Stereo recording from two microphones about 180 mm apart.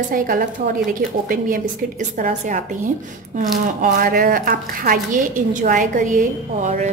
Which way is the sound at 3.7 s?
50° right (ahead or behind).